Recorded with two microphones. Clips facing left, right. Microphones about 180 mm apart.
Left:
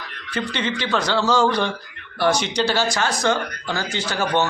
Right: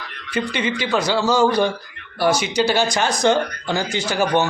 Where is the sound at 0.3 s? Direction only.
10° right (ahead or behind).